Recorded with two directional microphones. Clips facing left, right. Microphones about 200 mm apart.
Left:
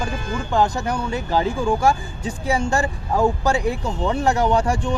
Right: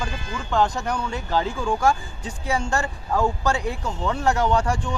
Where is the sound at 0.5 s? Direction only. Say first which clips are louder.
Left 2 dB; 10° left (ahead or behind).